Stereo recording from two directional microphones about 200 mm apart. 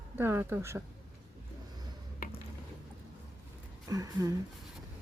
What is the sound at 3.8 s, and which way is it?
Speech, 15° right (ahead or behind).